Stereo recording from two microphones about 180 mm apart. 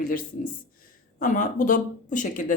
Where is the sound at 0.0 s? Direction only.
50° left (ahead or behind).